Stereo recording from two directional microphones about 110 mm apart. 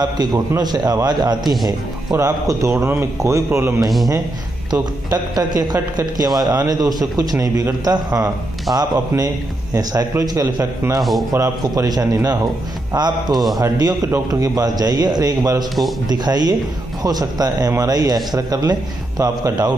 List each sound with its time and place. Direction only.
0.0 s a man's voice: 40° right (ahead or behind)
2.1 s a man's voice: 25° right (ahead or behind)
5.1 s a man's voice: 35° right (ahead or behind)
11.0 s a man's voice: centre (ahead or behind)
11.3 s a man's voice: 30° right (ahead or behind)